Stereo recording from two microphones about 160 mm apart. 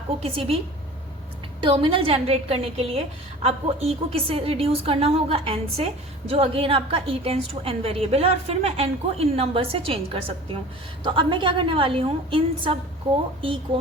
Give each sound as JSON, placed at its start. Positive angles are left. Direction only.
{"t": 0.2, "sound": "a woman's voice", "side_deg": -35}
{"t": 1.6, "sound": "a woman's voice", "side_deg": -30}